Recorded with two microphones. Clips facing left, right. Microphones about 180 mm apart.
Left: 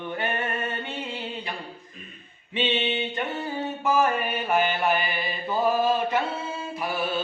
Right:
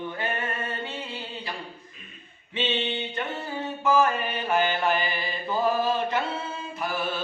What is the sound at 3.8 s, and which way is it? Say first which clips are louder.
Music: right 1 dB; 15° left (ahead or behind).